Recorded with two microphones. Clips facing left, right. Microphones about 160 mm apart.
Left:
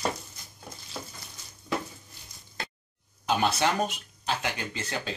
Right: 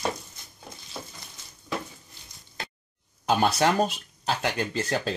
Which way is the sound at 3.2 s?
40° right (ahead or behind).